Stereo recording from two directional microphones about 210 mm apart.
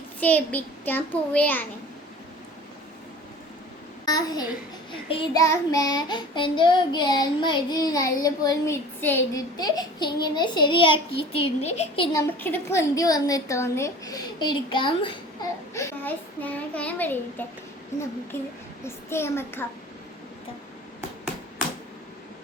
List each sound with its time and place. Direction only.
0.2 s a woman's voice: 5° left (ahead or behind)
4.0 s a child's voice: 20° left (ahead or behind)
4.9 s child singing: 25° left (ahead or behind)
12.1 s a woman's voice: 10° left (ahead or behind)